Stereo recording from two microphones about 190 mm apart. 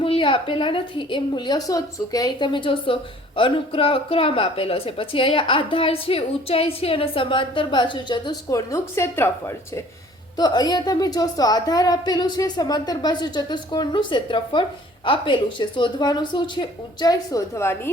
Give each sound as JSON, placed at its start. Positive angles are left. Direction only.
{"t": 0.0, "sound": "a woman's voice", "side_deg": 25}